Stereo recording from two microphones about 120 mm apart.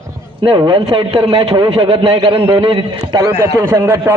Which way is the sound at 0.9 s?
50° right (ahead or behind).